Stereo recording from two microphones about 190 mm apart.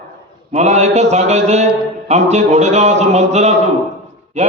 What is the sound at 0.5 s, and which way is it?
Speech, 35° right (ahead or behind).